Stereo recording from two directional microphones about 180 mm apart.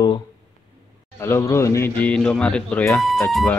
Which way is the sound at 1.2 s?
15° left (ahead or behind).